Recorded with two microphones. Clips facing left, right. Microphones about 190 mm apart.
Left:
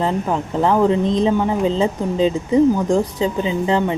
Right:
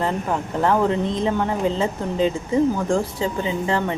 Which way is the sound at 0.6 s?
15° left (ahead or behind).